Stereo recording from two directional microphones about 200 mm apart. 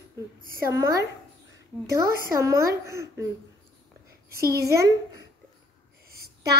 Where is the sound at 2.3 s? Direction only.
15° right (ahead or behind).